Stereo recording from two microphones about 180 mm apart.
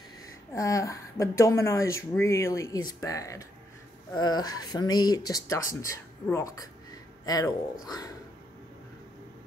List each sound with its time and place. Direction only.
0.5 s a woman's voice: 15° left (ahead or behind)